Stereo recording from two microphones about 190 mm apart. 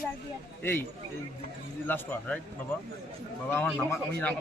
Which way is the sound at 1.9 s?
10° left (ahead or behind).